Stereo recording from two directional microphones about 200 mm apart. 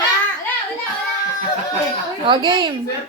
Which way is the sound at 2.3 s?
25° right (ahead or behind).